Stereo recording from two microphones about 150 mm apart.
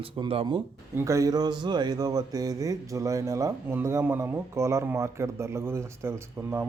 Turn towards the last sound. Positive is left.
turn(degrees=-15)  # may be behind; listen again after turning